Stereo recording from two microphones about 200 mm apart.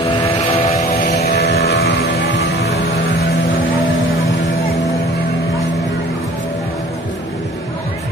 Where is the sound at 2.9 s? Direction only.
50° left (ahead or behind).